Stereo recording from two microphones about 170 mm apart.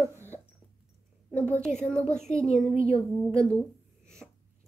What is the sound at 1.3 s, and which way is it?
A woman's voice, 10° left (ahead or behind).